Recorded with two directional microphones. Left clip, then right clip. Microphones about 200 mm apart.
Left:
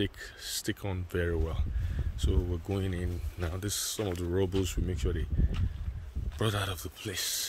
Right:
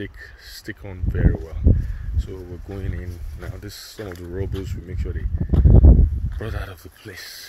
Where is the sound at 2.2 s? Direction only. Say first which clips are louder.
Left 1 dB; 25° left (ahead or behind).